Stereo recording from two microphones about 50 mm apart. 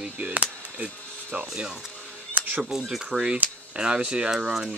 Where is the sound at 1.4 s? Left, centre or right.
Centre.